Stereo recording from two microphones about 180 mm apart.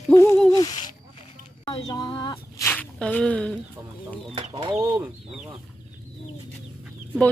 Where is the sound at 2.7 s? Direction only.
10° left (ahead or behind).